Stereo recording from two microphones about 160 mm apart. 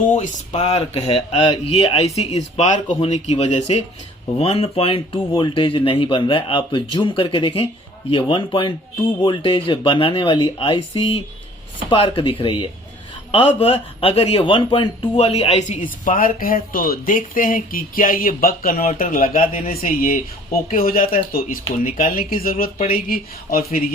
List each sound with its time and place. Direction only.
0.1 s speech: 50° left (ahead or behind)
14.0 s speech: 35° left (ahead or behind); by 23.8 s 65° left (ahead or behind)